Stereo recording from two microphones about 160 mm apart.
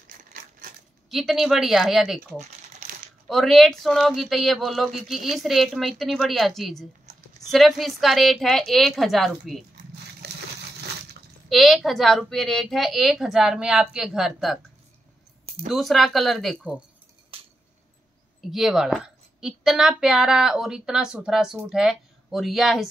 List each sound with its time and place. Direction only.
0.2 s typewriter: 55° right (ahead or behind)
1.1 s speech: centre (ahead or behind)
10.2 s a sound: 80° right
11.4 s speech: centre (ahead or behind)
15.4 s a sound: 40° right (ahead or behind)
15.7 s speech: centre (ahead or behind)
16.5 s speech: 10° right (ahead or behind)
17.3 s a sound: 35° right (ahead or behind)
18.4 s speech: centre (ahead or behind)